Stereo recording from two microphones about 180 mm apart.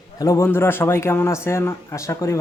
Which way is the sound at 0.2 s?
15° left (ahead or behind).